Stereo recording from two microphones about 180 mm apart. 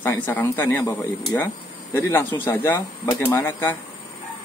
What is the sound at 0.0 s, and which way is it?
Speech, 10° left (ahead or behind).